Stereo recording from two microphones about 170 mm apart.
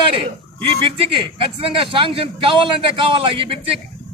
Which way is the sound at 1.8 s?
30° right (ahead or behind).